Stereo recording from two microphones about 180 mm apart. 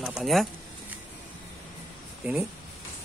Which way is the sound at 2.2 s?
Centre (ahead or behind).